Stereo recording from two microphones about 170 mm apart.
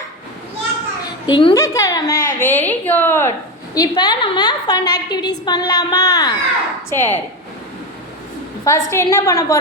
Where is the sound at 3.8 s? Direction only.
25° left (ahead or behind).